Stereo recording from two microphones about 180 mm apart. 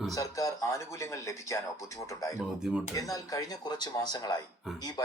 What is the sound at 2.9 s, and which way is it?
Speech, 20° left (ahead or behind).